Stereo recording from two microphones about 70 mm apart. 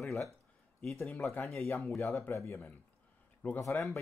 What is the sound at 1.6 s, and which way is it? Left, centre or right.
Speech, left.